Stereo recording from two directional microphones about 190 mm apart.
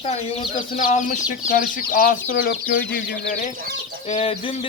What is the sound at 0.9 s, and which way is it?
Speech, 40° left (ahead or behind).